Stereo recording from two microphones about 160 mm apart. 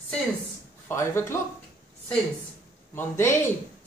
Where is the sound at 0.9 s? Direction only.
15° left (ahead or behind).